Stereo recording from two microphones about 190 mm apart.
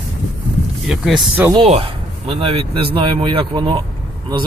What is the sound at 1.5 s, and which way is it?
Speech, 30° right (ahead or behind).